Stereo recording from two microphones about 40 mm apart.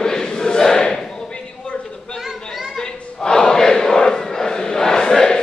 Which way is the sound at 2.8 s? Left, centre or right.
Centre.